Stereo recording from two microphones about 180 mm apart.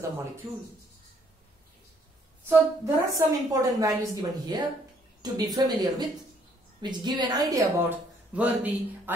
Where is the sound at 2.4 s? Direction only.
15° right (ahead or behind).